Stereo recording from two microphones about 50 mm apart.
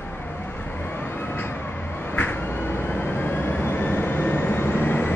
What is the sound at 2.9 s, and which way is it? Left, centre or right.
Vehicle, left.